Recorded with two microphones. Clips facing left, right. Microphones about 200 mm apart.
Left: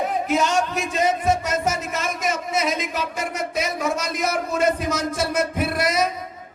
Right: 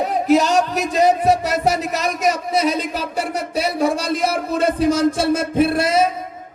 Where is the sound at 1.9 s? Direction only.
40° right (ahead or behind).